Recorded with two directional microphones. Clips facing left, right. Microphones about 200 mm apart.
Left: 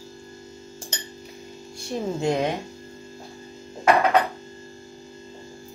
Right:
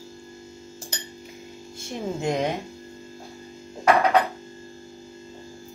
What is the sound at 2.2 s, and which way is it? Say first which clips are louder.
Speech: left 2 dB; 15° right (ahead or behind).